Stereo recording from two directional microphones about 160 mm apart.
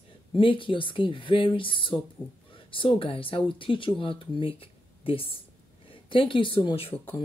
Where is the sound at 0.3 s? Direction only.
35° left (ahead or behind).